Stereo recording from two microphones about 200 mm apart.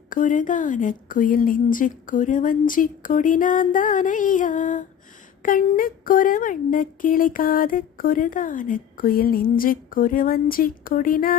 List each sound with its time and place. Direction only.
0.1 s a woman's voice: 40° left (ahead or behind)